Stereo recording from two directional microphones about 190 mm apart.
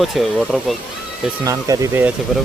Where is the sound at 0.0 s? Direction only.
Centre (ahead or behind).